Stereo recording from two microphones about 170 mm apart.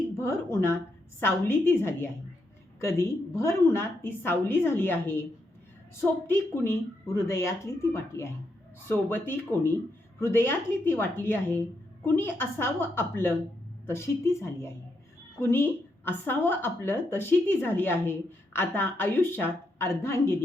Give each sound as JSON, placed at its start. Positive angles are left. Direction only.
{"t": 0.2, "sound": "a woman's voice", "side_deg": 15}
{"t": 6.2, "sound": "a woman's voice", "side_deg": 15}